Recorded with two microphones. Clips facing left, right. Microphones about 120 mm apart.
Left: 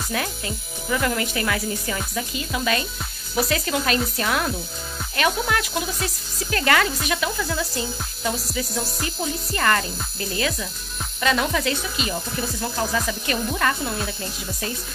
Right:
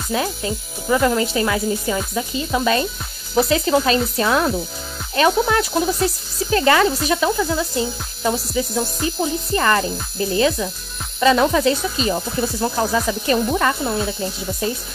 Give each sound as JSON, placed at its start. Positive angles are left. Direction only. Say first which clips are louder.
{"t": 0.1, "sound": "speech", "louder": "right 8 dB", "side_deg": -25}